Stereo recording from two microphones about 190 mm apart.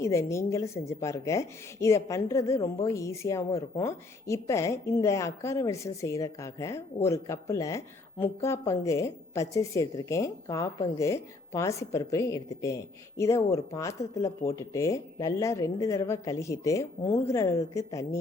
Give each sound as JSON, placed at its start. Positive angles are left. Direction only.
{"t": 0.0, "sound": "a woman's voice", "side_deg": 15}